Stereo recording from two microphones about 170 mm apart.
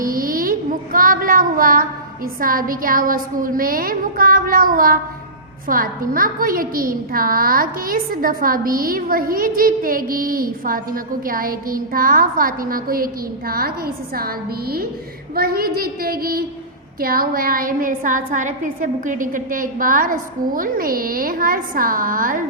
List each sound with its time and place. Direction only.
0.0 s a sound: 55° right (ahead or behind)
0.9 s child singing: 55° right (ahead or behind)
2.4 s a woman's voice: 55° right (ahead or behind)